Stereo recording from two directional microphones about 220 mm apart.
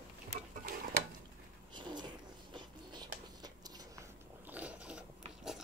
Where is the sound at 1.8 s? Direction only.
20° right (ahead or behind).